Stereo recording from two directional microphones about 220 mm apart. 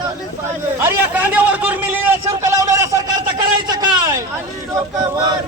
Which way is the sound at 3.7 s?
20° right (ahead or behind).